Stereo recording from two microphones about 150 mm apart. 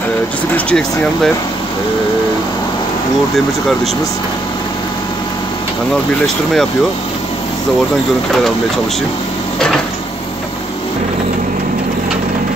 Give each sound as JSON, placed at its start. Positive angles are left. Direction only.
{"t": 0.7, "sound": "speech", "side_deg": 5}
{"t": 6.2, "sound": "speech", "side_deg": 0}